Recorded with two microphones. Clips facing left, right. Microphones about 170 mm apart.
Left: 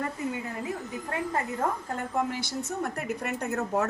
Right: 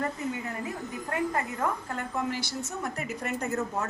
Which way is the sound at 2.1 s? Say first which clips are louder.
Left 2 dB; 50° left (ahead or behind).